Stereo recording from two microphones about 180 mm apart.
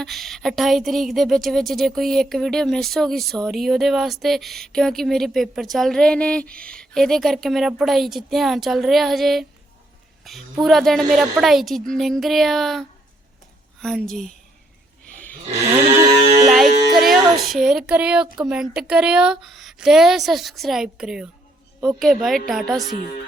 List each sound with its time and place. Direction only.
0.0 s a woman's voice: centre (ahead or behind)
13.8 s a woman's voice: centre (ahead or behind)
16.5 s a sound: centre (ahead or behind)
18.4 s a woman's voice: 5° right (ahead or behind)